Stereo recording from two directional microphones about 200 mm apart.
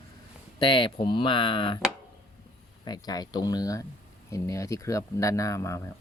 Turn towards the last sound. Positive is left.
turn(degrees=15)  # may be behind; listen again after turning